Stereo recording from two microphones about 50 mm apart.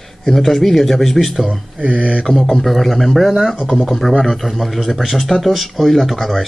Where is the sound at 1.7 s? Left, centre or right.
Right.